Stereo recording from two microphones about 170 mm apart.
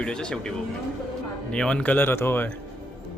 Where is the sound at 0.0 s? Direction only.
5° left (ahead or behind).